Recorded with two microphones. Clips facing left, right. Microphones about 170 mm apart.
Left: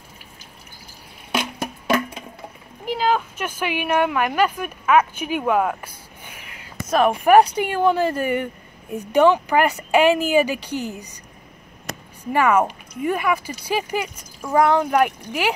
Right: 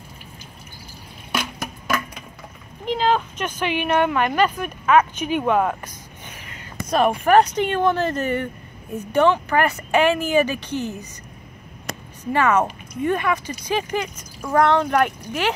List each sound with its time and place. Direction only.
1.3 s music: 25° left (ahead or behind)
2.8 s speech: 10° left (ahead or behind)
12.3 s speech: 10° left (ahead or behind)